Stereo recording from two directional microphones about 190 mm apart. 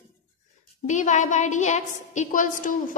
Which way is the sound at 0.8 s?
40° left (ahead or behind).